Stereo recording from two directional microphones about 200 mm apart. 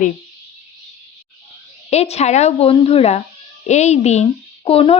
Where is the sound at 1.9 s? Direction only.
30° left (ahead or behind).